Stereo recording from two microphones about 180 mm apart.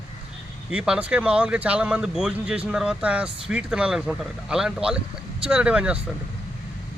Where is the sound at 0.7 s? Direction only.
5° right (ahead or behind).